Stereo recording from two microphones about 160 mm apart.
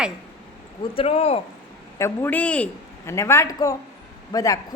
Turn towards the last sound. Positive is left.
turn(degrees=20)  # may be behind; listen again after turning